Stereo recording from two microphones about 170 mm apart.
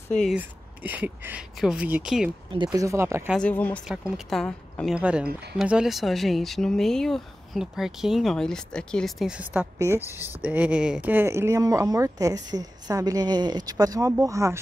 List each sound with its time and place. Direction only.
0.2 s speech: 5° right (ahead or behind)
2.5 s speech: 25° right (ahead or behind)
3.3 s speech: 10° left (ahead or behind)
3.8 s speech: 5° right (ahead or behind)
4.9 s speech: 5° right (ahead or behind)